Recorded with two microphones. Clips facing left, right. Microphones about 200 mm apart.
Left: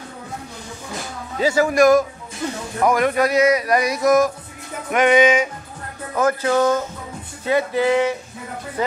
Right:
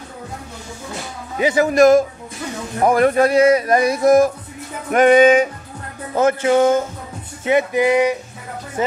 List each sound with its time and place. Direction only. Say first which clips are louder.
1.4 s a man's voice: right 2 dB; 20° right (ahead or behind)
4.9 s music: right 4 dB; 35° right (ahead or behind)
6.1 s a man's voice: right 3 dB; 25° right (ahead or behind)
7.4 s music: right 2 dB; 20° right (ahead or behind)
8.8 s a man's voice: right 2 dB; 20° right (ahead or behind)